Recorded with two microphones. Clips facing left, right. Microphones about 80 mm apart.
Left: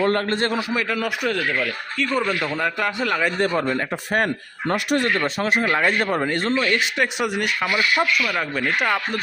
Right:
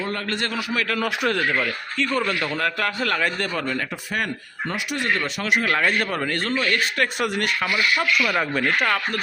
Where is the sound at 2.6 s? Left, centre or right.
Centre.